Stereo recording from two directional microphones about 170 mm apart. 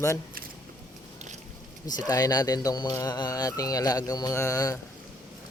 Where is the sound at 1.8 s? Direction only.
20° left (ahead or behind).